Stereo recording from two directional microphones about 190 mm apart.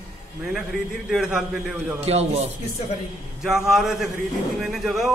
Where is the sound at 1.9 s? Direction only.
35° right (ahead or behind).